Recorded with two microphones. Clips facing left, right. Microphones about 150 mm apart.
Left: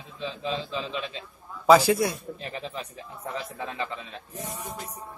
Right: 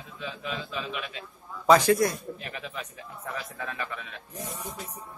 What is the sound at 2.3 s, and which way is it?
A man's voice, 30° left (ahead or behind).